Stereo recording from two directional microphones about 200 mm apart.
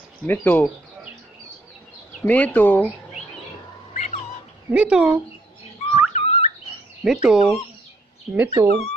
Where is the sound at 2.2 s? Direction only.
10° left (ahead or behind).